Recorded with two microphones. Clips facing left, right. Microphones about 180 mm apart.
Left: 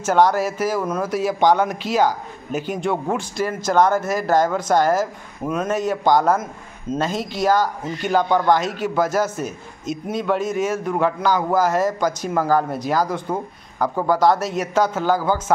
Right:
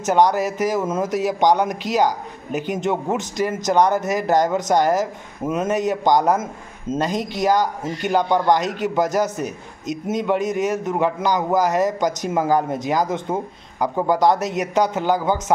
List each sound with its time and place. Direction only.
0.0 s a man's voice: 15° right (ahead or behind)